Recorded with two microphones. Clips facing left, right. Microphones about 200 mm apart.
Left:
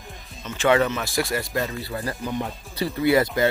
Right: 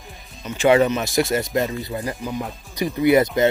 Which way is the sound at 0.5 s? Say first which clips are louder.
Right 4 dB; 15° right (ahead or behind).